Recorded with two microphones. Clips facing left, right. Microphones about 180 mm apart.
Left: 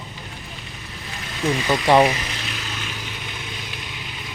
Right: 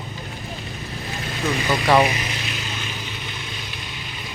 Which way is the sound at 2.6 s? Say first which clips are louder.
Right 1 dB; centre (ahead or behind).